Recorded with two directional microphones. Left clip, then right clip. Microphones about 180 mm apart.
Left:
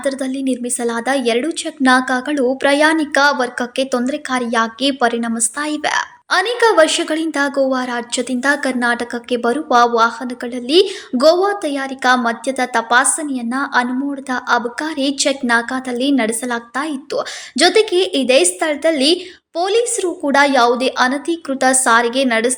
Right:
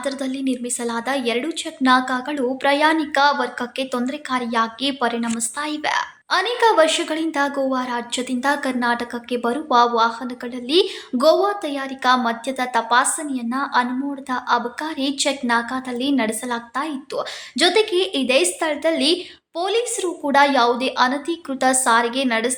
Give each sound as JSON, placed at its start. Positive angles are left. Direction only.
{"t": 0.0, "sound": "a woman's voice", "side_deg": 15}